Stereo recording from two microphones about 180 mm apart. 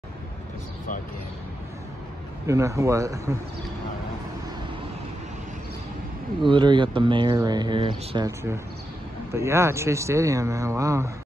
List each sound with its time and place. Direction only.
2.4 s speech: 15° right (ahead or behind)
6.4 s speech: 25° right (ahead or behind)
8.3 s speech: 15° right (ahead or behind)